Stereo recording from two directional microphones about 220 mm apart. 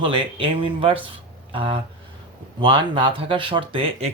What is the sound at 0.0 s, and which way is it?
Speech, 25° right (ahead or behind).